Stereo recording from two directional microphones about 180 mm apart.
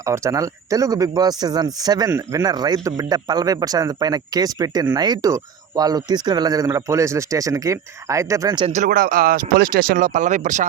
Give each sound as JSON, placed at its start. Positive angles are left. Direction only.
{"t": 0.0, "sound": "speech", "side_deg": -15}
{"t": 8.7, "sound": "speech", "side_deg": -45}